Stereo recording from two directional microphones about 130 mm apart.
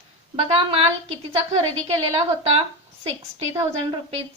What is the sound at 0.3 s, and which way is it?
A woman's voice, 50° right (ahead or behind).